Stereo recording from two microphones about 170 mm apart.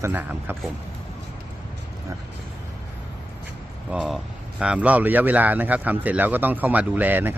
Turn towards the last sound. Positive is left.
turn(degrees=-10)  # may be behind; listen again after turning